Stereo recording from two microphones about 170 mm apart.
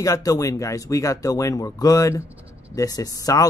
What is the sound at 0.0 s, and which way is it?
Speech, 20° left (ahead or behind).